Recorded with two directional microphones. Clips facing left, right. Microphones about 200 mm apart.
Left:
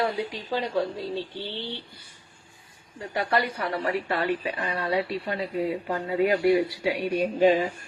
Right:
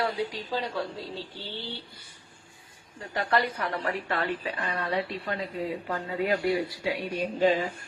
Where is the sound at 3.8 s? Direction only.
15° left (ahead or behind).